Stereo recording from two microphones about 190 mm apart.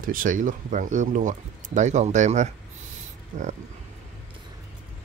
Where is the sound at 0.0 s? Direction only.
45° right (ahead or behind).